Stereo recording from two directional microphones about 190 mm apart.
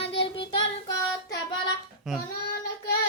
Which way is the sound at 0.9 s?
20° left (ahead or behind).